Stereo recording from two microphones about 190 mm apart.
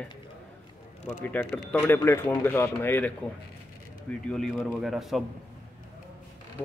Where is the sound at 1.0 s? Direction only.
10° left (ahead or behind).